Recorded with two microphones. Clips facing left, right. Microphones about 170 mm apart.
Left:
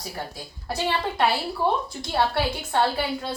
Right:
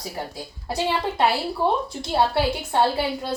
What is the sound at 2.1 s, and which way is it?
Speech, 15° right (ahead or behind).